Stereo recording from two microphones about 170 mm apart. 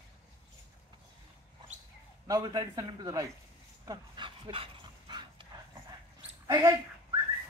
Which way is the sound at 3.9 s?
25° right (ahead or behind).